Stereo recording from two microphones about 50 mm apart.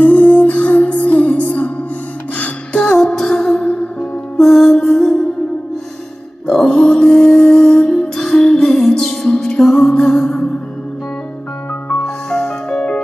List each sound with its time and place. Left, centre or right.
0.0 s music: left; by 5.2 s centre
6.4 s music: centre
12.0 s music: centre